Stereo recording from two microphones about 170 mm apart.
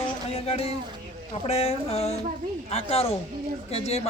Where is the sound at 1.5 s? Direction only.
35° left (ahead or behind).